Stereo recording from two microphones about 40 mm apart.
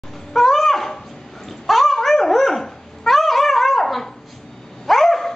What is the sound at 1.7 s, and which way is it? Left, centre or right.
Dog, centre.